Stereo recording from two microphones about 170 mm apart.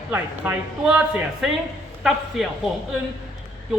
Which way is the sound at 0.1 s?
10° right (ahead or behind).